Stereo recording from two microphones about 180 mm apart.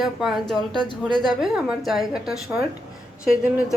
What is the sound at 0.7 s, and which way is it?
Speech, 25° left (ahead or behind).